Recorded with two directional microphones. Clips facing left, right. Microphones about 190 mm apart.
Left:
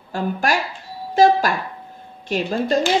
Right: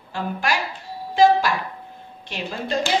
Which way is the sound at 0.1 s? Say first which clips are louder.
Left 4 dB; 45° left (ahead or behind).